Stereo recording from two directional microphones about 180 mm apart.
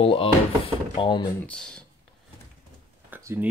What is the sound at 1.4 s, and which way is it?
Speech, 5° left (ahead or behind).